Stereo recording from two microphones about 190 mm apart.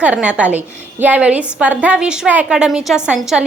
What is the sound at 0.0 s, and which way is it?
A woman's voice, 5° right (ahead or behind).